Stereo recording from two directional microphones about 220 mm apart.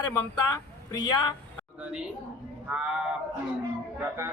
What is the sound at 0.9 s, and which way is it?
Speech, 20° left (ahead or behind).